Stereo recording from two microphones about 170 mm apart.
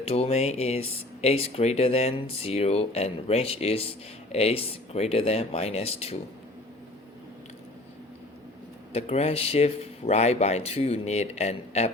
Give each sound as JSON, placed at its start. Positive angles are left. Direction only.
{"t": 0.1, "sound": "speech", "side_deg": 35}
{"t": 8.9, "sound": "speech", "side_deg": 35}